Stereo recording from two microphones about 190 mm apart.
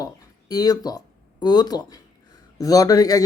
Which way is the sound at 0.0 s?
20° left (ahead or behind).